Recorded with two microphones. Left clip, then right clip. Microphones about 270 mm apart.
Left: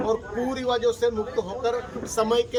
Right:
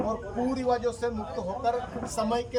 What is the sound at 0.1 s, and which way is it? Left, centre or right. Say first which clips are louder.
A woman's voice: left 4 dB; centre.